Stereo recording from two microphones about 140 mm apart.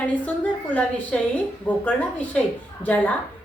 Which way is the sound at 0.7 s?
10° left (ahead or behind).